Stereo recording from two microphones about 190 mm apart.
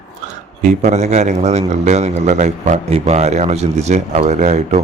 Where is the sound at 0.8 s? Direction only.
35° right (ahead or behind).